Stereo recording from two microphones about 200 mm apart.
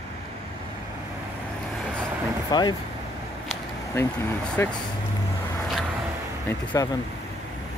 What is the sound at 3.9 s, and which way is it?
Speech, 10° left (ahead or behind).